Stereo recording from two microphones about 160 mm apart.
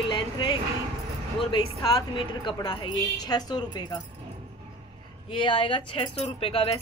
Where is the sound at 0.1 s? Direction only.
30° left (ahead or behind).